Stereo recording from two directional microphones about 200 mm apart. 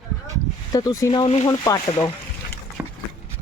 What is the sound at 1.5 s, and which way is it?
Speech, 15° left (ahead or behind).